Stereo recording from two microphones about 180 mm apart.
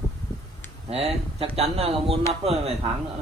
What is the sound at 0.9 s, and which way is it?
A man's voice, 35° right (ahead or behind).